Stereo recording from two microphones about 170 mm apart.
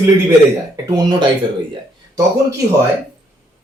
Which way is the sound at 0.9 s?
25° right (ahead or behind).